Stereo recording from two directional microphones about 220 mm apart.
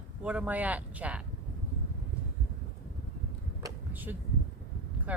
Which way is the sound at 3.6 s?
10° right (ahead or behind).